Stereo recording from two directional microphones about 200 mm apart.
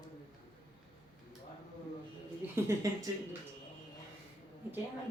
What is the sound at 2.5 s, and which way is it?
Speech, 15° right (ahead or behind).